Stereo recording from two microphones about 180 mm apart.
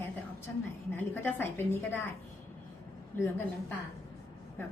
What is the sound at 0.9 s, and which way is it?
A woman's voice, 10° left (ahead or behind).